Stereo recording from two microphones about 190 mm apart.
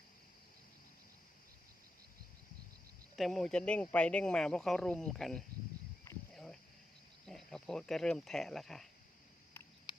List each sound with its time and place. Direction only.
3.2 s speech: centre (ahead or behind)
6.3 s cricket: 5° left (ahead or behind)
7.3 s speech: 5° left (ahead or behind)
9.9 s patter: 25° left (ahead or behind)